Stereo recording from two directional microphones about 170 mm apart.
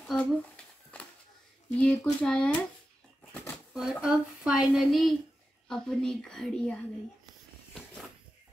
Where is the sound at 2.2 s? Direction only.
5° left (ahead or behind).